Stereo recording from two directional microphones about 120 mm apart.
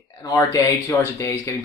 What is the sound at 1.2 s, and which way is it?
Speech, 20° left (ahead or behind).